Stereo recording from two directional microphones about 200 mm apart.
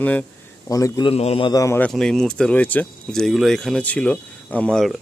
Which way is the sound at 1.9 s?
5° left (ahead or behind).